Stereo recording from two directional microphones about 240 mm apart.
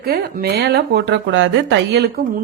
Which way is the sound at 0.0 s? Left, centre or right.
Right.